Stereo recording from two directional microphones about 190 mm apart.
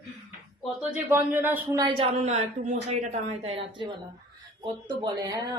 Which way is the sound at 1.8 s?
30° right (ahead or behind).